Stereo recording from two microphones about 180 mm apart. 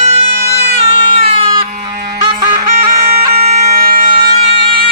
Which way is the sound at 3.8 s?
55° right (ahead or behind).